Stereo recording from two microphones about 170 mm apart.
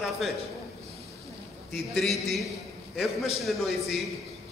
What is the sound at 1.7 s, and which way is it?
A man's voice, centre (ahead or behind).